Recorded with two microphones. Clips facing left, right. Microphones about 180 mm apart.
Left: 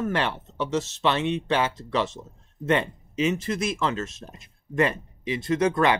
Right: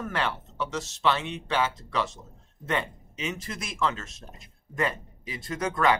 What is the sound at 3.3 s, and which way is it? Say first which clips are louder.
Speech: left 7 dB; 25° left (ahead or behind).